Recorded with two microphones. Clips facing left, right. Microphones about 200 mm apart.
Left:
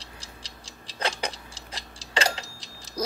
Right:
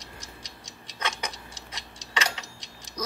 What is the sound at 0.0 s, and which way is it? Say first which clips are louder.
Clock: right 1 dB; 30° left (ahead or behind).